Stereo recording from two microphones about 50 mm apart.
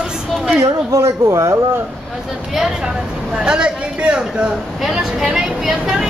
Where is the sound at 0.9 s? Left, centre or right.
Right.